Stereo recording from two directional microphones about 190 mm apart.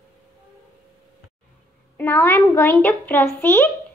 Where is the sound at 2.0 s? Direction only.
10° left (ahead or behind).